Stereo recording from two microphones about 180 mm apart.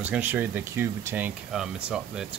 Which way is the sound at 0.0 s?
10° right (ahead or behind).